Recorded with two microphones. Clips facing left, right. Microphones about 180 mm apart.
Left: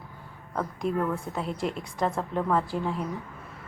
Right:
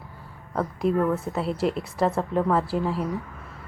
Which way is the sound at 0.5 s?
5° right (ahead or behind).